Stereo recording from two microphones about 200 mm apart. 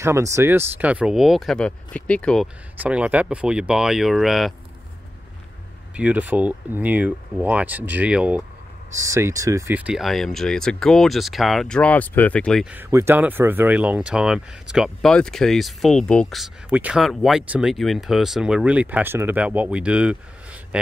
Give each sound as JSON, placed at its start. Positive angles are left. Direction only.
{"t": 0.0, "sound": "speech", "side_deg": -15}
{"t": 5.9, "sound": "speech", "side_deg": -5}
{"t": 12.7, "sound": "speech", "side_deg": -10}